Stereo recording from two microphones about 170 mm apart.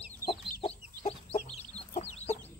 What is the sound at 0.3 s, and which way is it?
Chicken, 35° left (ahead or behind).